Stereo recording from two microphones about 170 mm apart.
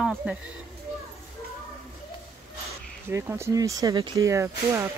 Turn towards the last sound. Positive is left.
turn(degrees=-15)  # may be behind; listen again after turning